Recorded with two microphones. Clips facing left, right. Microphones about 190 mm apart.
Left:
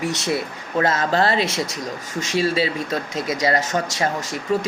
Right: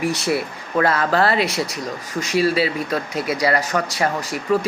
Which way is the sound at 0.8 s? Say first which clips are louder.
Right 1 dB; 25° left (ahead or behind).